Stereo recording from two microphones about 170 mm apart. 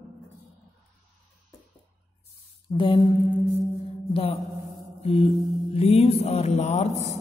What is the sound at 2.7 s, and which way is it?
Mantra, 30° left (ahead or behind).